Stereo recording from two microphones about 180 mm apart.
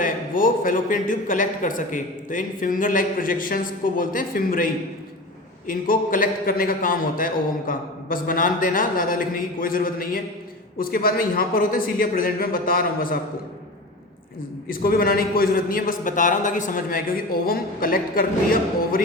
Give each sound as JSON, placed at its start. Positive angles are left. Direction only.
{"t": 0.0, "sound": "a man's voice", "side_deg": 50}
{"t": 14.7, "sound": "a man's voice", "side_deg": 55}